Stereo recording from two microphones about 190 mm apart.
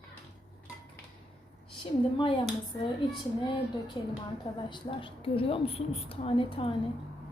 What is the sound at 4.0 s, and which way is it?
A woman's voice, 25° left (ahead or behind).